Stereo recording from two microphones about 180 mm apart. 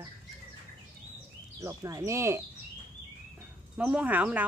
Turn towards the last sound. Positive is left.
turn(degrees=-10)  # may be behind; listen again after turning